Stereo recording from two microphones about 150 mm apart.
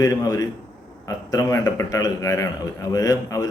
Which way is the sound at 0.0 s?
25° left (ahead or behind).